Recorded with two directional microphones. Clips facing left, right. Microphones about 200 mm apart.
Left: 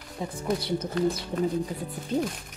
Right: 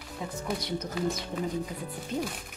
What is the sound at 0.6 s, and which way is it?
Speech, 30° left (ahead or behind).